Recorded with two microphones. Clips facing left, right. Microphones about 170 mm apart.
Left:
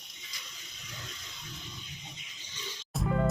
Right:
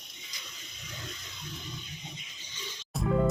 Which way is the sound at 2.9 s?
Centre (ahead or behind).